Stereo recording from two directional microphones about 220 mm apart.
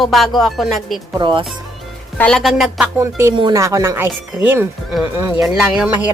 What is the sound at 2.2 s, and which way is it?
Speech, 5° left (ahead or behind).